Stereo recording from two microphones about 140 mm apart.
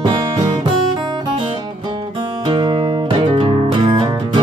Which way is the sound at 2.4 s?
35° right (ahead or behind).